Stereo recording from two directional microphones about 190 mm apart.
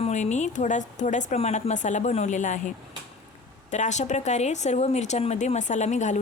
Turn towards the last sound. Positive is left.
turn(degrees=40)  # may be behind; listen again after turning